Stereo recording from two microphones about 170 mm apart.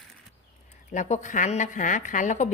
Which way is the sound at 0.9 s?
45° left (ahead or behind).